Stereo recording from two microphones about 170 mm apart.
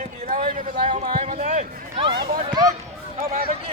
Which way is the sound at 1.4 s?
45° right (ahead or behind).